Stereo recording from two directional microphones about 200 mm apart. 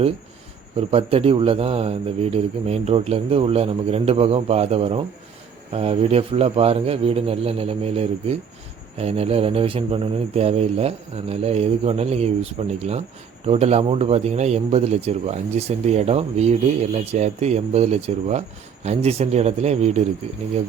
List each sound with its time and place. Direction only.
0.8 s a man's voice: 30° right (ahead or behind)